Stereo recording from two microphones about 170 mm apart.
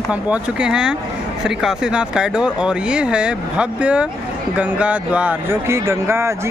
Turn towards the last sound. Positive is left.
turn(degrees=-15)  # may be behind; listen again after turning